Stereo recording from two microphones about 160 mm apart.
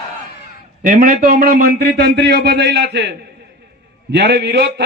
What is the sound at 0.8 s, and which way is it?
A man's voice, 55° right (ahead or behind).